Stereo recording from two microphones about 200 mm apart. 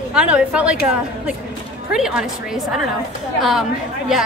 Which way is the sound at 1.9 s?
5° right (ahead or behind).